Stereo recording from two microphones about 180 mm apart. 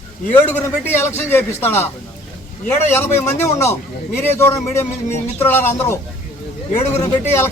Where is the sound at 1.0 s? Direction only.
15° left (ahead or behind).